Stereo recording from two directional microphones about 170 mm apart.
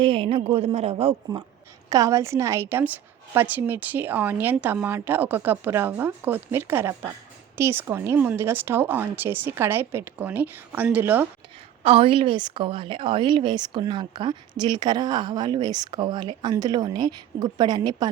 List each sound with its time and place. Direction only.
0.0 s a woman's voice: 30° right (ahead or behind)
1.9 s a woman's voice: 20° right (ahead or behind)
11.8 s a woman's voice: 35° right (ahead or behind)